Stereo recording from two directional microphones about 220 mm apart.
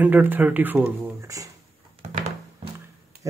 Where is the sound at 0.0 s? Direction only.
10° right (ahead or behind).